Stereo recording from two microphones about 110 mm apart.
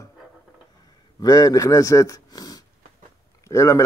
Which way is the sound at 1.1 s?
30° left (ahead or behind).